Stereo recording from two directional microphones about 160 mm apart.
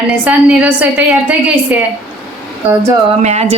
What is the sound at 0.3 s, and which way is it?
A woman's voice, 10° right (ahead or behind).